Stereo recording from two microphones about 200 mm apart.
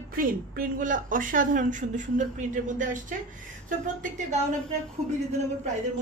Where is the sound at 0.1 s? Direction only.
45° right (ahead or behind).